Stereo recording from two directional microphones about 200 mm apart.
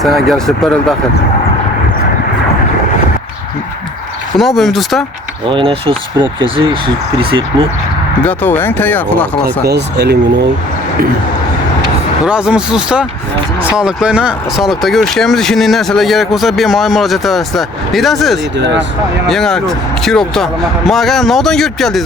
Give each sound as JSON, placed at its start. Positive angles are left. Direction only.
{"t": 0.0, "sound": "speech", "side_deg": 0}
{"t": 4.4, "sound": "speech", "side_deg": 0}
{"t": 5.5, "sound": "speech", "side_deg": -25}
{"t": 8.2, "sound": "speech", "side_deg": 10}
{"t": 9.4, "sound": "speech", "side_deg": -55}
{"t": 12.2, "sound": "speech", "side_deg": -5}
{"t": 18.5, "sound": "speech", "side_deg": -60}
{"t": 19.3, "sound": "speech", "side_deg": 0}